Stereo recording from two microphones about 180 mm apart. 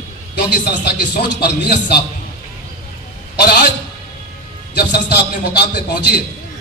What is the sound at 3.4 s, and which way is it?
Speech, 60° left (ahead or behind).